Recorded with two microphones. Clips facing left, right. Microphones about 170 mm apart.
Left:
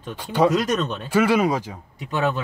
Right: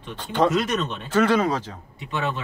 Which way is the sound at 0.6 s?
40° left (ahead or behind).